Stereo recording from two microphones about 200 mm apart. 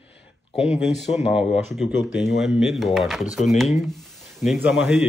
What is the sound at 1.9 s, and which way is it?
Speech, 60° left (ahead or behind).